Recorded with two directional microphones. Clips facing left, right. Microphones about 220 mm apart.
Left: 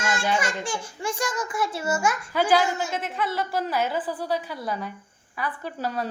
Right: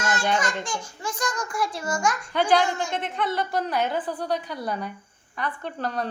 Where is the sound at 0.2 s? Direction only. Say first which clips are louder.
Even; 10° left (ahead or behind).